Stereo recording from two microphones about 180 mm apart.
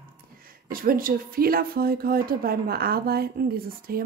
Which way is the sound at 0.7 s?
50° right (ahead or behind).